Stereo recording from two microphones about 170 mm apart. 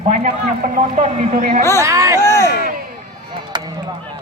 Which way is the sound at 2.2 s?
15° left (ahead or behind).